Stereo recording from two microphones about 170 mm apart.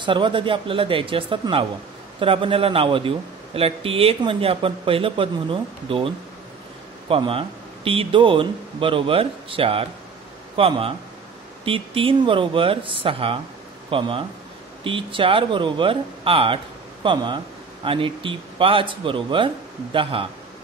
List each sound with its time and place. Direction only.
0.0 s a man's voice: 30° right (ahead or behind)